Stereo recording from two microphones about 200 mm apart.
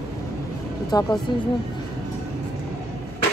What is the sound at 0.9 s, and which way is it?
Speech, 20° left (ahead or behind).